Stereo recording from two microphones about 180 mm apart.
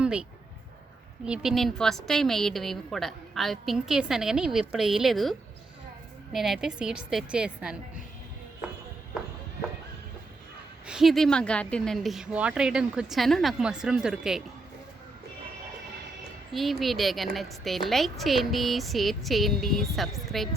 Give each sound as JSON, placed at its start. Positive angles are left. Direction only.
{"t": 0.0, "sound": "a sound", "side_deg": -5}
{"t": 1.2, "sound": "a woman's voice", "side_deg": -5}
{"t": 10.8, "sound": "a woman's voice", "side_deg": 0}
{"t": 16.5, "sound": "a woman's voice", "side_deg": 0}